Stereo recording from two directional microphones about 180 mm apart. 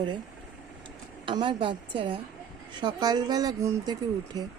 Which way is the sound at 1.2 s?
25° right (ahead or behind).